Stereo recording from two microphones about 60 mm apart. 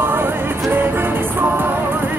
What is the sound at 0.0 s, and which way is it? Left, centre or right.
Music, right.